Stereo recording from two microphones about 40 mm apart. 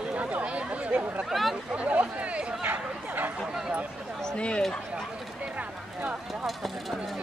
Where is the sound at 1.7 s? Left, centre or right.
Right.